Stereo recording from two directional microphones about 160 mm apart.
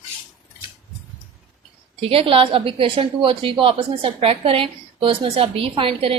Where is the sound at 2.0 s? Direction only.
35° right (ahead or behind).